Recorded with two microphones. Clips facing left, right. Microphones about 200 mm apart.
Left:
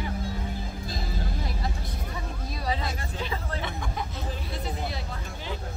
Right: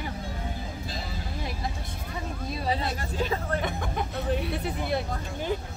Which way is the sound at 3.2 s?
45° right (ahead or behind).